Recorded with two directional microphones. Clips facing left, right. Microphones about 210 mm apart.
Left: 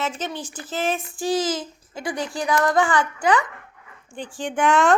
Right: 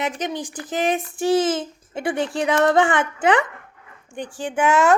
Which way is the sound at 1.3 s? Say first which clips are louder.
Right 4 dB; 25° right (ahead or behind).